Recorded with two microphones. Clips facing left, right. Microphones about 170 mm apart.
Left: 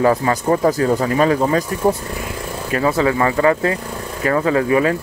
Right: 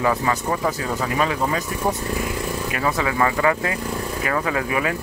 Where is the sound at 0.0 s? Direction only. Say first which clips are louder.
Left 5 dB; 40° left (ahead or behind).